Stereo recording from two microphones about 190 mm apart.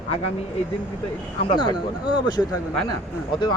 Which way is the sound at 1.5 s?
25° left (ahead or behind).